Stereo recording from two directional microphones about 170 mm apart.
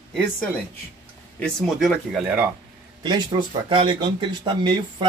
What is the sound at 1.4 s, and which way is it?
Speech, centre (ahead or behind).